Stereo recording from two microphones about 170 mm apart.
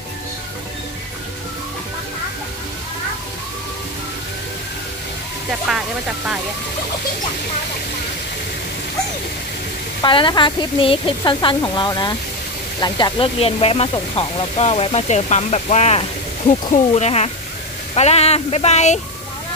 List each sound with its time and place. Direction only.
5.7 s speech: 5° right (ahead or behind)
10.0 s speech: 30° left (ahead or behind)